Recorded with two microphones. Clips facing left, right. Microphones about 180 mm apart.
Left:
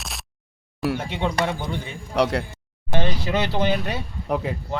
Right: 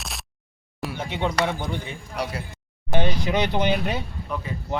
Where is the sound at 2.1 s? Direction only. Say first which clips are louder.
Left 9 dB; 75° left (ahead or behind).